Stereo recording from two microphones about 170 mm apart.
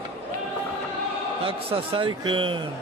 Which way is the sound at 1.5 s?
35° right (ahead or behind).